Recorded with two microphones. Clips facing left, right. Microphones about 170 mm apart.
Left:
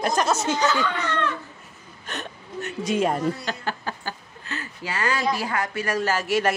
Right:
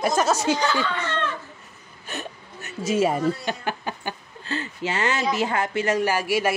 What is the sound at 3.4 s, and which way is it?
Speech, 15° right (ahead or behind).